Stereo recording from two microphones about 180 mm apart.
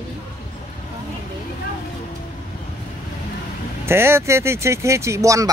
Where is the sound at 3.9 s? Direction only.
15° right (ahead or behind).